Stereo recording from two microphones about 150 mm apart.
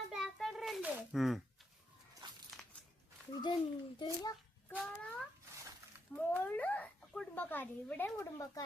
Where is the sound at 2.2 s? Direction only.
30° right (ahead or behind).